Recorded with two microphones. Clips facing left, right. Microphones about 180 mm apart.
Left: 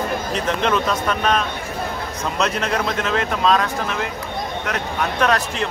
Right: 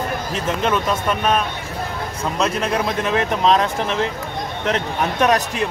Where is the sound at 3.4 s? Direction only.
20° right (ahead or behind).